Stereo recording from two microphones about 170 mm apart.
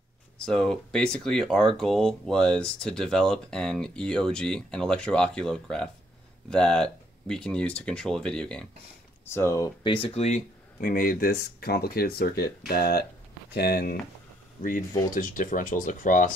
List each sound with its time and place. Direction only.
0.5 s speech: 5° left (ahead or behind)
10.0 s speech: 40° left (ahead or behind)
10.8 s speech: 55° left (ahead or behind)
14.6 s speech: 50° left (ahead or behind)